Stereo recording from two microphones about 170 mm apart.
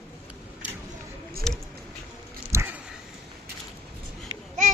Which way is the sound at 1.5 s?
5° left (ahead or behind).